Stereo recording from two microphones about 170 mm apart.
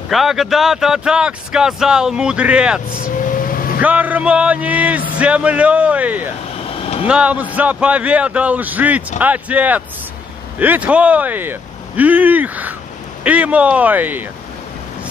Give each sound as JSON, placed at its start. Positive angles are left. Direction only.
{"t": 0.1, "sound": "speech", "side_deg": 0}
{"t": 3.2, "sound": "vehicle", "side_deg": 55}
{"t": 3.8, "sound": "speech", "side_deg": -10}